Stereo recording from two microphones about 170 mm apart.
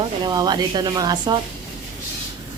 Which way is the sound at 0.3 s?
25° right (ahead or behind).